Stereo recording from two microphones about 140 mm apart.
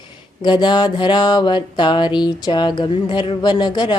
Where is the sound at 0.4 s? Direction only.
30° left (ahead or behind).